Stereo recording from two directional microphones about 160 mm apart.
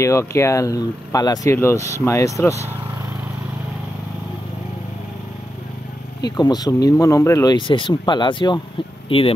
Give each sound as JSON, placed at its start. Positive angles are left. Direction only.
{"t": 0.0, "sound": "speech", "side_deg": 20}
{"t": 6.2, "sound": "speech", "side_deg": 25}